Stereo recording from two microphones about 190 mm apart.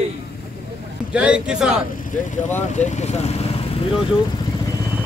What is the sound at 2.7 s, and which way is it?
Speech, 40° left (ahead or behind).